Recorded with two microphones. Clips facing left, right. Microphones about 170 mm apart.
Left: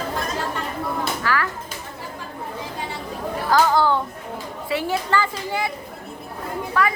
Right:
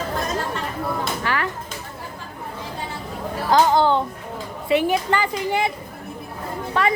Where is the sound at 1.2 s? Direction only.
20° right (ahead or behind).